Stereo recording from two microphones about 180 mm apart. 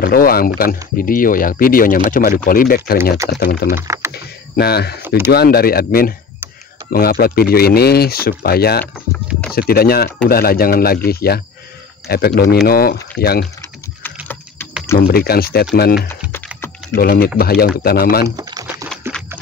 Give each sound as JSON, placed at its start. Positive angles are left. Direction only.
{"t": 0.0, "sound": "speech", "side_deg": 55}
{"t": 3.8, "sound": "speech", "side_deg": -15}
{"t": 4.1, "sound": "a sound", "side_deg": 65}
{"t": 5.3, "sound": "speech", "side_deg": 60}
{"t": 14.2, "sound": "typing", "side_deg": 10}
{"t": 15.0, "sound": "speech", "side_deg": 60}
{"t": 16.1, "sound": "typing", "side_deg": 15}
{"t": 16.9, "sound": "speech", "side_deg": 60}
{"t": 18.2, "sound": "typing", "side_deg": -20}